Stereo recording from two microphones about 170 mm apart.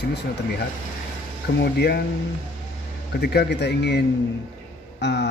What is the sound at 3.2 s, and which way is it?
Speech, 75° left (ahead or behind).